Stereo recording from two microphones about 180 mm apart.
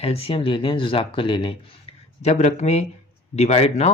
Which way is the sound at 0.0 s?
35° left (ahead or behind).